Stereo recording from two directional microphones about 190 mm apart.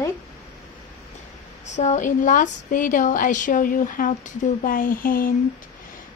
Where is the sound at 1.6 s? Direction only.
40° left (ahead or behind).